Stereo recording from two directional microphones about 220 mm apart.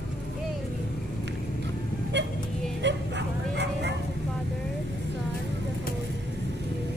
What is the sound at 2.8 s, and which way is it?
Bow-wow, 55° right (ahead or behind).